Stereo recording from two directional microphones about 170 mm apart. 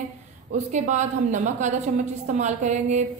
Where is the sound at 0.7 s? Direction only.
45° right (ahead or behind).